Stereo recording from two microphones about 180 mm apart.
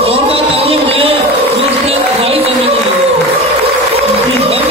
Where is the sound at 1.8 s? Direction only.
35° right (ahead or behind).